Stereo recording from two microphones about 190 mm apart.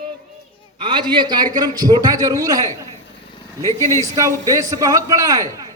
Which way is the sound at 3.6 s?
15° left (ahead or behind).